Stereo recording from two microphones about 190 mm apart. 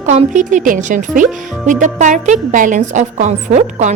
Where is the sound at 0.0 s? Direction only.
40° right (ahead or behind).